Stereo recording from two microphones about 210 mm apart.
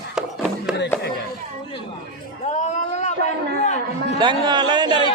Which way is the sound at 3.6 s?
35° left (ahead or behind).